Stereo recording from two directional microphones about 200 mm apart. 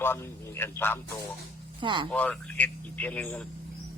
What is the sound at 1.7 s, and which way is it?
Speech, 25° right (ahead or behind).